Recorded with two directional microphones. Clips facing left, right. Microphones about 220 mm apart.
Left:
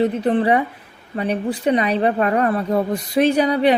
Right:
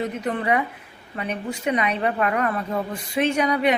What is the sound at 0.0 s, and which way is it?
A woman's voice, 30° left (ahead or behind).